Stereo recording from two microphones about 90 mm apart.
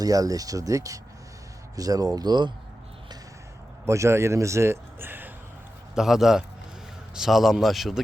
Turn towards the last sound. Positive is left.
turn(degrees=0)  # may be behind; listen again after turning